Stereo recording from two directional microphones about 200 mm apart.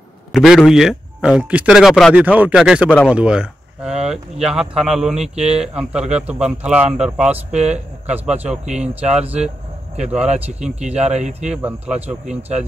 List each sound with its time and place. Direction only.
0.3 s speech: centre (ahead or behind)
7.5 s speech: 35° right (ahead or behind)
8.1 s speech: 5° right (ahead or behind)
8.6 s speech: 35° right (ahead or behind)
9.0 s speech: 5° right (ahead or behind)
10.8 s speech: 35° right (ahead or behind)
11.4 s speech: 5° right (ahead or behind)